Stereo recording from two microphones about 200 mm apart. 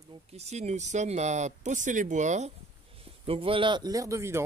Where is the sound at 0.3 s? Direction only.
35° right (ahead or behind).